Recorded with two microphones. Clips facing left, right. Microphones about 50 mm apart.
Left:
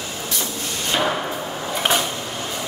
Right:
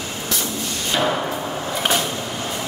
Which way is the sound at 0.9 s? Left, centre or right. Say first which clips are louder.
Right 1 dB; centre.